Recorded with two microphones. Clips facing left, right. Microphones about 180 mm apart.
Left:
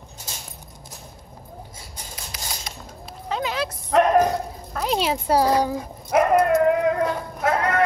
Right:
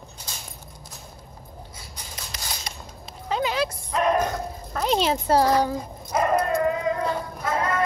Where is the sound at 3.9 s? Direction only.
70° left (ahead or behind).